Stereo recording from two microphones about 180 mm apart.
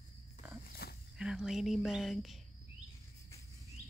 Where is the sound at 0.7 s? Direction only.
60° left (ahead or behind).